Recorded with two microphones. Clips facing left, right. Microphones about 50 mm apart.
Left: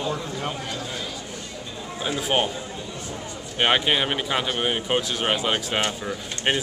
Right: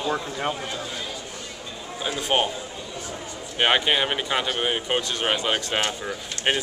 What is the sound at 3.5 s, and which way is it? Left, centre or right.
Speech, centre.